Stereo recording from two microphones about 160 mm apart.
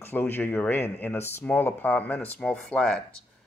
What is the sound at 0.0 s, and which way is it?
Speech, 15° left (ahead or behind).